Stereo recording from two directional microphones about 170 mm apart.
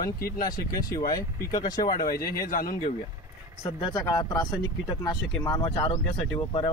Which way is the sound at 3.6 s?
25° left (ahead or behind).